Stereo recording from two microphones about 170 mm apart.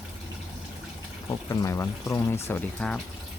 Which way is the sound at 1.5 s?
20° left (ahead or behind).